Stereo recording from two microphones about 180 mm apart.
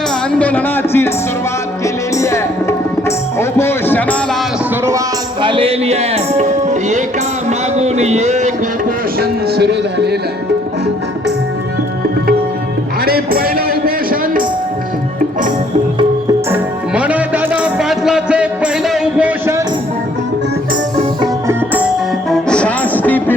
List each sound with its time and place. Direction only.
0.3 s a man's voice: 10° left (ahead or behind)
2.1 s music: 15° left (ahead or behind)
4.9 s music: 20° right (ahead or behind); by 7.0 s 40° right (ahead or behind)
7.8 s speech: 40° right (ahead or behind)
9.1 s speech: 60° right (ahead or behind)
13.1 s music: 55° right (ahead or behind)
16.5 s music: 5° right (ahead or behind)
21.4 s music: 10° right (ahead or behind)
22.3 s music: 5° left (ahead or behind)